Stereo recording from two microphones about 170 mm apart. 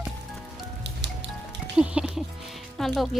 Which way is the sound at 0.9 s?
90° right.